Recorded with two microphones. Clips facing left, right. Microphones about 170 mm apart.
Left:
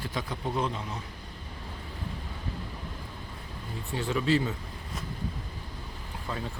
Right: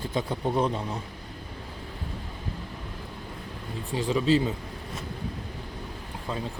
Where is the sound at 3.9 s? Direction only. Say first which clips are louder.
Right 3 dB; 15° right (ahead or behind).